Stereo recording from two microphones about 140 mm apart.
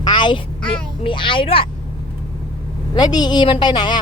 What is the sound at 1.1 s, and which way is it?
Speech, 35° left (ahead or behind).